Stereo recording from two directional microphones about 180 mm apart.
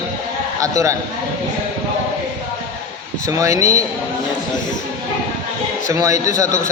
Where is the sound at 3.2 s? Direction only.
15° right (ahead or behind).